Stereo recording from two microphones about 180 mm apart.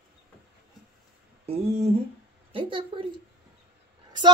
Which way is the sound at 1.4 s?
35° right (ahead or behind).